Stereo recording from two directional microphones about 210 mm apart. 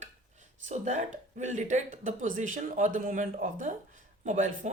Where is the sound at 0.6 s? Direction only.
35° right (ahead or behind).